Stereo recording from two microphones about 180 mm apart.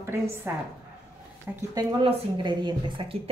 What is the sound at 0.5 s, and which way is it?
Speech, 10° right (ahead or behind).